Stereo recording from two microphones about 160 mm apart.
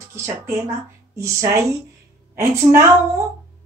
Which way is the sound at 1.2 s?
20° right (ahead or behind).